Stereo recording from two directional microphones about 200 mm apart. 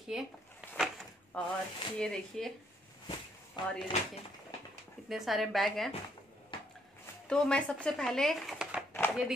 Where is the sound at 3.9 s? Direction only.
35° left (ahead or behind).